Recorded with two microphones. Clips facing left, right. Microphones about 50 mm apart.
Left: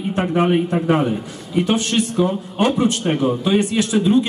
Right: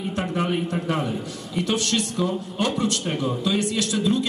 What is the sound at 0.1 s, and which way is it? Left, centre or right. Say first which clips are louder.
A man's voice: left 9 dB; left.